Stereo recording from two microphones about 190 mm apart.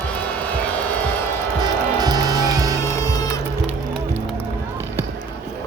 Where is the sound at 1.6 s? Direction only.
20° right (ahead or behind).